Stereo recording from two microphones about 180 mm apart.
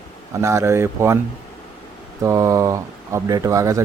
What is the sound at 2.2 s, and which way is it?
A man's voice, 15° right (ahead or behind).